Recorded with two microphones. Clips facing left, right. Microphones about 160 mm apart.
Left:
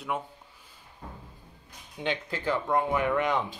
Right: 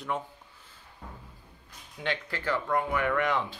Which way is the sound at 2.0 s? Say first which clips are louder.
Left 2 dB; 20° left (ahead or behind).